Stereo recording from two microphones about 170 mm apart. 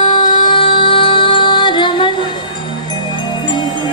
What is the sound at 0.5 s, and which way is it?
Music, 30° left (ahead or behind).